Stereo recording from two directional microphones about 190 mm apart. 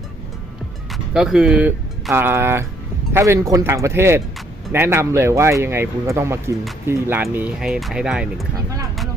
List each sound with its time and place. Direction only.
0.9 s speech: centre (ahead or behind)
8.5 s speech: 20° right (ahead or behind)